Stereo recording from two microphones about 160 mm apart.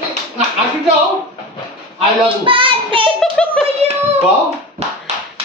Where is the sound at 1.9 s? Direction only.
35° right (ahead or behind).